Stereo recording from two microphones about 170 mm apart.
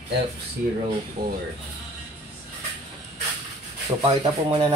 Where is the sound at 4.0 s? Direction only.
30° right (ahead or behind).